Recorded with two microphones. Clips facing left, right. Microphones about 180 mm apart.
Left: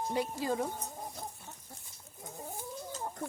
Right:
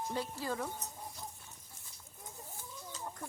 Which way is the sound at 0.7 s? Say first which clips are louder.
Left 4 dB; 55° left (ahead or behind).